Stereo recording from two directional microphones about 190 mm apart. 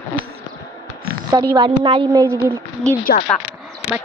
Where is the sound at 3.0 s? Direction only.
50° left (ahead or behind).